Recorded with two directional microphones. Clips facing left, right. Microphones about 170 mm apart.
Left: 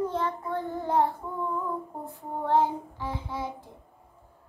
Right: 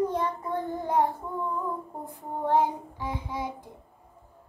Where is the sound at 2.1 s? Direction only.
15° right (ahead or behind).